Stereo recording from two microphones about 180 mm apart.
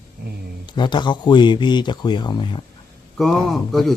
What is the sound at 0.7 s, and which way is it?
Speech, 25° left (ahead or behind).